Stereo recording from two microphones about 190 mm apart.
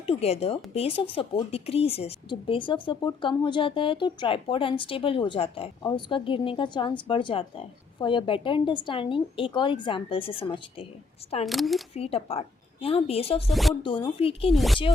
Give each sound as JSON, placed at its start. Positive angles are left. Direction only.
{"t": 0.0, "sound": "speech", "side_deg": 30}
{"t": 11.4, "sound": "speech", "side_deg": 0}
{"t": 11.9, "sound": "a woman's voice", "side_deg": 30}
{"t": 13.5, "sound": "speech", "side_deg": 0}
{"t": 13.8, "sound": "speech", "side_deg": 25}
{"t": 14.5, "sound": "speech", "side_deg": 0}